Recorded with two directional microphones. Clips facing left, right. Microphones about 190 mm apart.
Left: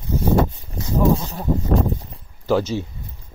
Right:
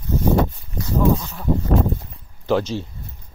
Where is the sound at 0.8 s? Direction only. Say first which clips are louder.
Even; 20° left (ahead or behind).